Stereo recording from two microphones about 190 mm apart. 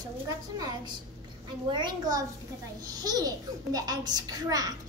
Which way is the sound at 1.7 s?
20° right (ahead or behind).